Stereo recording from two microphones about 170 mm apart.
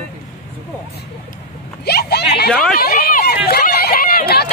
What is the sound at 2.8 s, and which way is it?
Run, 65° left (ahead or behind).